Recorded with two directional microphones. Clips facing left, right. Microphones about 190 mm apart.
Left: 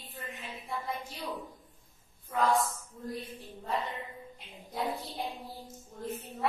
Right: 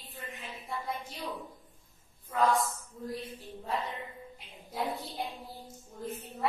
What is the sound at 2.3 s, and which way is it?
Speech, centre (ahead or behind).